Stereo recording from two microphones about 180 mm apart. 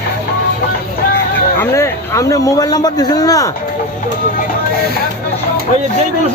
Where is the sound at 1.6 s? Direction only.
15° left (ahead or behind).